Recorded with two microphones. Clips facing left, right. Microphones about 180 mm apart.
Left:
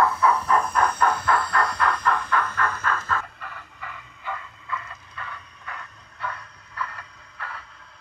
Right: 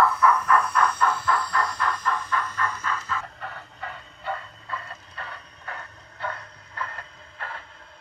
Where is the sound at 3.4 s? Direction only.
35° right (ahead or behind).